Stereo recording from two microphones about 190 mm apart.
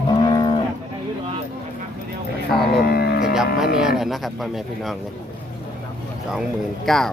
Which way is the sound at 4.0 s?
Centre (ahead or behind).